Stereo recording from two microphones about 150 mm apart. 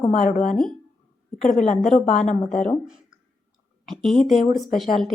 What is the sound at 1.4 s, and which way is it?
Speech, 5° left (ahead or behind).